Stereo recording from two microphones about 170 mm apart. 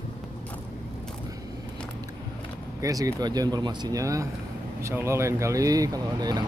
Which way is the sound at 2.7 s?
20° right (ahead or behind).